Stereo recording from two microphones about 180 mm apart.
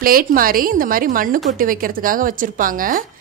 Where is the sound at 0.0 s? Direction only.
55° right (ahead or behind).